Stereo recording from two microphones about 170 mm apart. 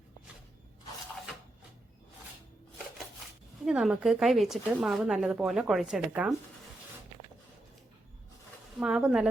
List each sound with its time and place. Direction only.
3.7 s speech: centre (ahead or behind)
8.8 s speech: 5° right (ahead or behind)